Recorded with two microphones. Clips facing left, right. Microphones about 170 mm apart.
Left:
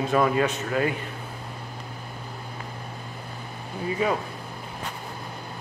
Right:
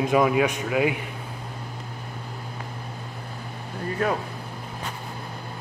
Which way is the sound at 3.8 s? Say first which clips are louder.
Even; 5° left (ahead or behind).